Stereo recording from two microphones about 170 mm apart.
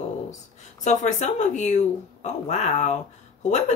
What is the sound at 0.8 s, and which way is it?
Speech, 45° left (ahead or behind).